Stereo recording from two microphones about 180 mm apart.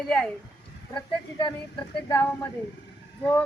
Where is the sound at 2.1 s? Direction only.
15° left (ahead or behind).